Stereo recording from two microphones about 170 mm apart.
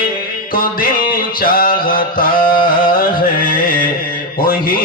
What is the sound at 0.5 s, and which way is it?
Music, 55° left (ahead or behind).